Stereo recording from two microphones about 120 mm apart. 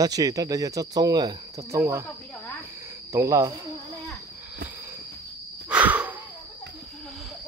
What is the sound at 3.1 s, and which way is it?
Speech, 25° right (ahead or behind).